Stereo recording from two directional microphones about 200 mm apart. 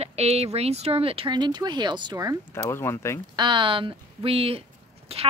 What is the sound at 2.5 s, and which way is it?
Speech, 10° left (ahead or behind).